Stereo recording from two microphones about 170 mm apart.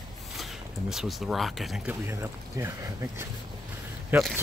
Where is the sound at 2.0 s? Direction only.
15° right (ahead or behind).